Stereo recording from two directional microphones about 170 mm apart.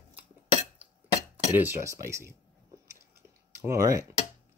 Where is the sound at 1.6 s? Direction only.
15° right (ahead or behind).